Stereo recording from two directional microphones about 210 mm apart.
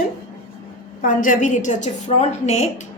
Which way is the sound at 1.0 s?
40° left (ahead or behind).